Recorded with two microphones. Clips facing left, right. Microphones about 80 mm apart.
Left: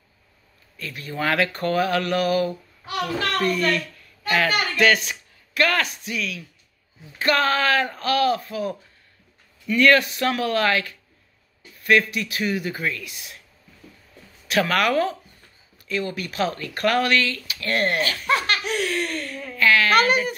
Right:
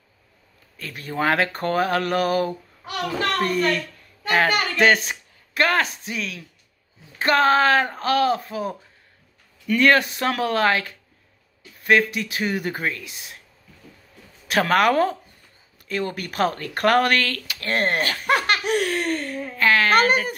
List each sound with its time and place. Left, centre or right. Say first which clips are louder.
0.7 s speech: right 3 dB; right
9.8 s speech: left 1 dB; right
12.9 s speech: left 1 dB; right
14.5 s speech: right 2 dB; right
17.6 s speech: even; right
18.0 s speech: right 2 dB; right